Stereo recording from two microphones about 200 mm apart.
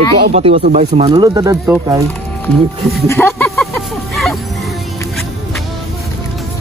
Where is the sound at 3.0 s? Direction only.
15° left (ahead or behind).